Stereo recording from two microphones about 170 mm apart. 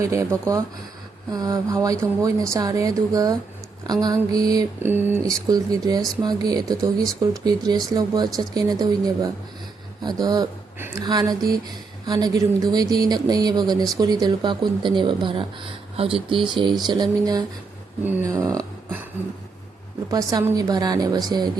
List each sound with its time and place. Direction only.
0.0 s speech: 15° right (ahead or behind)
20.1 s speech: 20° right (ahead or behind)